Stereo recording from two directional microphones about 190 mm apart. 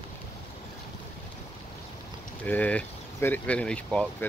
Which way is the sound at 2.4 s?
10° left (ahead or behind).